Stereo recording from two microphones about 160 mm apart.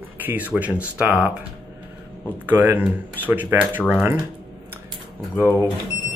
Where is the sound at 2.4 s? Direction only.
10° right (ahead or behind).